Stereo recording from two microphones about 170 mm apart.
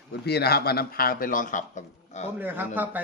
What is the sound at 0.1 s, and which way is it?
A man's voice, 75° left (ahead or behind).